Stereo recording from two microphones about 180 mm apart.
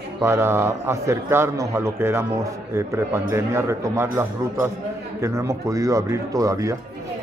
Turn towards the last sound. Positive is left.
turn(degrees=-20)  # may be behind; listen again after turning